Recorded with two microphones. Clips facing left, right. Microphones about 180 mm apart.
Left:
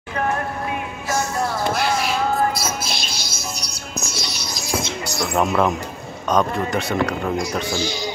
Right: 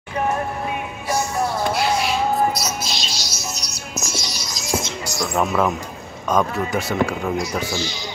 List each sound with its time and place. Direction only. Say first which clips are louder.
2.6 s music: even; 55° left (ahead or behind)
5.2 s speech: left 1 dB; 5° left (ahead or behind)